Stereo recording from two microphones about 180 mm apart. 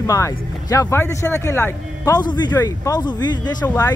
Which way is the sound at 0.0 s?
20° left (ahead or behind).